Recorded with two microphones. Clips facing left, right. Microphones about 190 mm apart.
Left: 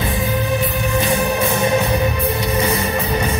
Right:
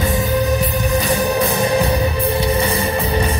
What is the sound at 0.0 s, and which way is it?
Music, 40° right (ahead or behind).